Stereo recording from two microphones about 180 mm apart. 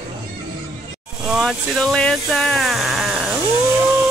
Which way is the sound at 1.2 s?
Centre (ahead or behind).